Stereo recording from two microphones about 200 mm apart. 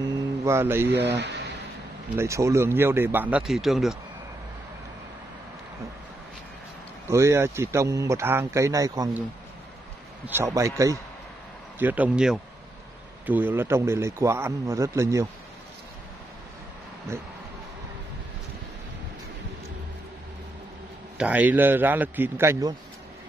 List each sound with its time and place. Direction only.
0.5 s a man's voice: 10° right (ahead or behind)
0.8 s speech: 60° right (ahead or behind)
2.1 s a man's voice: 15° right (ahead or behind)
7.1 s a man's voice: 15° right (ahead or behind)
10.2 s a man's voice: 10° right (ahead or behind)
21.2 s a man's voice: 10° right (ahead or behind)